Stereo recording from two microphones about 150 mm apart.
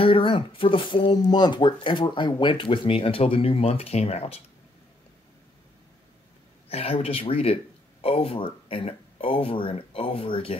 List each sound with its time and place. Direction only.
0.0 s speech: 35° left (ahead or behind)
6.7 s speech: 40° left (ahead or behind)